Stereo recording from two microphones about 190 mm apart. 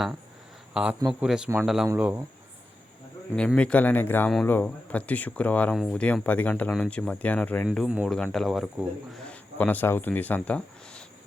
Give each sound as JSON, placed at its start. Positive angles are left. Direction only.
{"t": 0.7, "sound": "speech", "side_deg": -5}
{"t": 3.3, "sound": "a man's voice", "side_deg": 5}
{"t": 7.9, "sound": "speech", "side_deg": -5}